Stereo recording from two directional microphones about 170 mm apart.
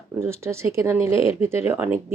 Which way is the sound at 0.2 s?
15° right (ahead or behind).